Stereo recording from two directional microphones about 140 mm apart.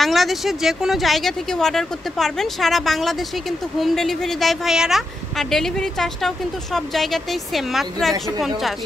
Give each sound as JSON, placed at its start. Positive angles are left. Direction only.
{"t": 0.0, "sound": "a woman's voice", "side_deg": 0}